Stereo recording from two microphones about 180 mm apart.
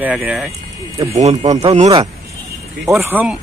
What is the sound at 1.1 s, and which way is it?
Speech, 35° right (ahead or behind).